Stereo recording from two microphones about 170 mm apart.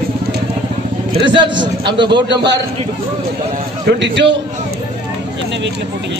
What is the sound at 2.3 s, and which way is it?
Speech, 90° right.